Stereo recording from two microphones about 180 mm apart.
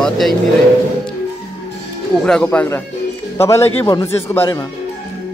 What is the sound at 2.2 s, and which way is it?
Speech, 5° left (ahead or behind).